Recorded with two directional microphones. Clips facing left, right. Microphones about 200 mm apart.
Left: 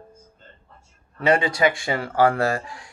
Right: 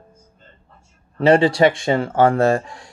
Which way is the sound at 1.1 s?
30° right (ahead or behind).